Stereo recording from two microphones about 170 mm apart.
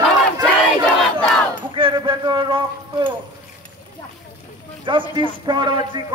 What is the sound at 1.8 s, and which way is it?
A man's voice, 30° right (ahead or behind).